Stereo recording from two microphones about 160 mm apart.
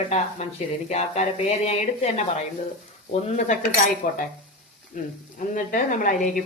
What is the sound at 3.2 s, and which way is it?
Speech, 50° left (ahead or behind).